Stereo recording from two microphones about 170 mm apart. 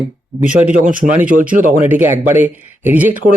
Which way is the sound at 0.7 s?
50° right (ahead or behind).